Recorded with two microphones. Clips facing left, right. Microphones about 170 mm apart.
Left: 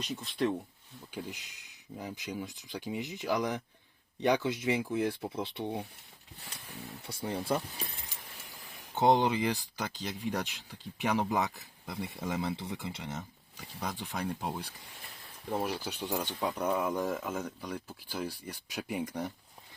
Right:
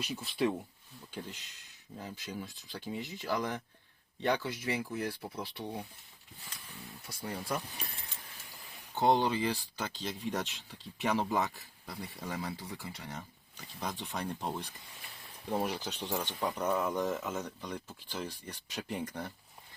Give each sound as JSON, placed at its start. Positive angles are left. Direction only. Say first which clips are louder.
{"t": 0.0, "sound": "speech", "louder": "even", "side_deg": -5}
{"t": 1.1, "sound": "speech", "louder": "left 3 dB", "side_deg": 15}
{"t": 7.1, "sound": "speech", "louder": "left 5 dB", "side_deg": 30}
{"t": 9.0, "sound": "speech", "louder": "left 2 dB", "side_deg": 20}
{"t": 13.8, "sound": "speech", "louder": "left 2 dB", "side_deg": 10}